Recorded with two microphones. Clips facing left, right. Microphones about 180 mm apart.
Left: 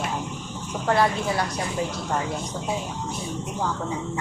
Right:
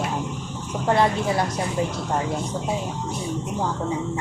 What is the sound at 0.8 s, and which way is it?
Speech, 20° right (ahead or behind).